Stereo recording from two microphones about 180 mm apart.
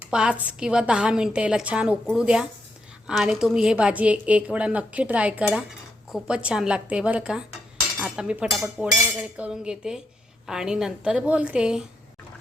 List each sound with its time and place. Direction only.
0.0 s a woman's voice: 5° right (ahead or behind)